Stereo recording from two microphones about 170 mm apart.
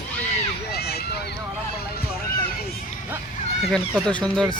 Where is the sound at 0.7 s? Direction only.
70° left (ahead or behind).